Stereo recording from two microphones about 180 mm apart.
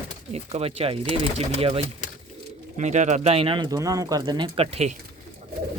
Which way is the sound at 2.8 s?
40° right (ahead or behind).